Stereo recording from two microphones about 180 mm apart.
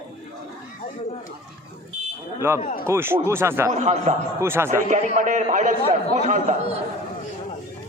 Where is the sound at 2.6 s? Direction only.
50° left (ahead or behind).